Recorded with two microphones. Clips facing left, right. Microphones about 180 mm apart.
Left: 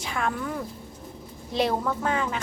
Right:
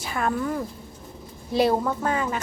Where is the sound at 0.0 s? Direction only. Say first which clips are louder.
Right 2 dB; 5° right (ahead or behind).